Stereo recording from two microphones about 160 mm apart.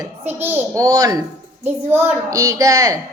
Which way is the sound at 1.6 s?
10° right (ahead or behind).